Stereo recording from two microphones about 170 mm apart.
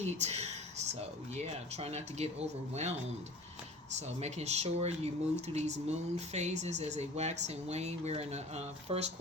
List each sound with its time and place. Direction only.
0.0 s a sound: 40° right (ahead or behind)
1.3 s speech: 40° right (ahead or behind)
3.9 s speech: 40° right (ahead or behind)